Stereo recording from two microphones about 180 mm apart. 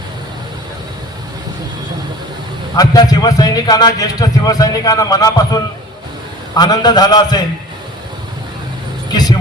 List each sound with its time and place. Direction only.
2.7 s a man's voice: 20° left (ahead or behind)